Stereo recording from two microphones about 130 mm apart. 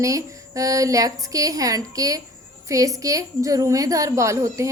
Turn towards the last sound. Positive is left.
turn(degrees=-25)  # may be behind; listen again after turning